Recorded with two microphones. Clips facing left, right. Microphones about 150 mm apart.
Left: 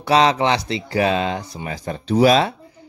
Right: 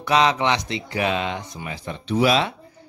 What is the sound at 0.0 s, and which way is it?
Speech, 35° left (ahead or behind).